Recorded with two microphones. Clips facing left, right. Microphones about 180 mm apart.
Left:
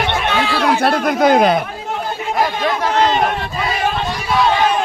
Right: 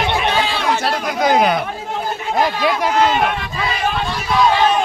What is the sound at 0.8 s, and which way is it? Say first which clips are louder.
Speech: left 4 dB; 55° left (ahead or behind).